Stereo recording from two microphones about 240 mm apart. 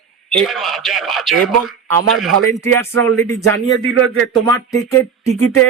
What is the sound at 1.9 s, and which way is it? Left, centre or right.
Speech, right.